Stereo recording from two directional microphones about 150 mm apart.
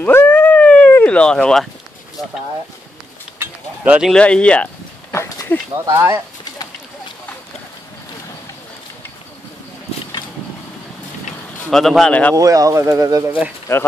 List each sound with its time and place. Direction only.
0.0 s dog: 10° left (ahead or behind)
3.3 s a sound: 10° right (ahead or behind)
4.1 s speech: 10° left (ahead or behind)
5.1 s a sound: 20° left (ahead or behind)
5.9 s speech: 15° right (ahead or behind)
11.7 s speech: centre (ahead or behind)
12.4 s speech: 20° right (ahead or behind)